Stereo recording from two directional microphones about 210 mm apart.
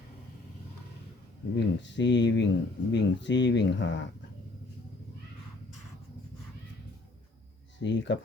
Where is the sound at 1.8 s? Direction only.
55° left (ahead or behind).